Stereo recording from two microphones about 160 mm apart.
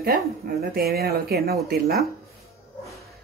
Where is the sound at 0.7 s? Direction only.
75° right (ahead or behind).